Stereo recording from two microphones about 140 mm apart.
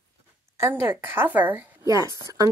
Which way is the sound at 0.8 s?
15° right (ahead or behind).